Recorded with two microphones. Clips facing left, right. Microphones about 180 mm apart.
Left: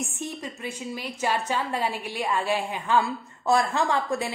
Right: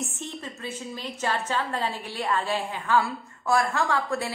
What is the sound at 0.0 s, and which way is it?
A woman's voice, 15° left (ahead or behind).